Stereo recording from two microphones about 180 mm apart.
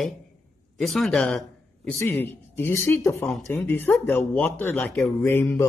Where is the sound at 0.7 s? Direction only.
Centre (ahead or behind).